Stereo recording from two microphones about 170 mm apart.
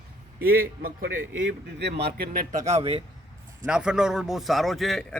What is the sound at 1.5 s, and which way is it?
A man's voice, 80° right.